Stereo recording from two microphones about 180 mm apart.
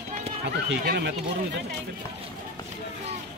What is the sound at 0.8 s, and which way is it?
Speech, 65° right (ahead or behind).